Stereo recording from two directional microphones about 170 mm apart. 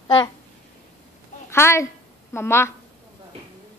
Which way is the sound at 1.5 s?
15° left (ahead or behind).